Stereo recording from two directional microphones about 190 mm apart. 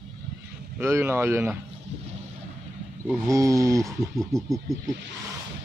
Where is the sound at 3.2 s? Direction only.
15° right (ahead or behind).